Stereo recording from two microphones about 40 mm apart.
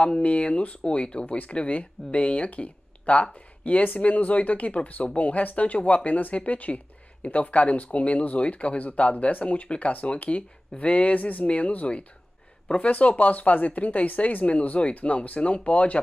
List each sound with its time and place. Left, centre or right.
0.0 s speech: left
12.9 s speech: left